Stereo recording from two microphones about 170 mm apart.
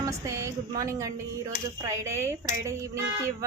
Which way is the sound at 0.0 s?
20° right (ahead or behind).